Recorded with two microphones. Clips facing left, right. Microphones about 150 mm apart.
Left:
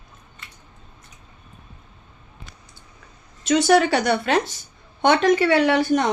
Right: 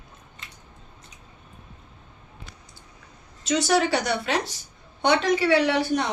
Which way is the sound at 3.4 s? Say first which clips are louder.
Left 5 dB; 60° left (ahead or behind).